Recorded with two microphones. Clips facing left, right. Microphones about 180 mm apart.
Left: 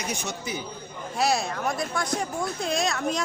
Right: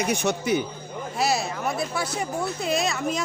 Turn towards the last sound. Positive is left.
turn(degrees=0)  # may be behind; listen again after turning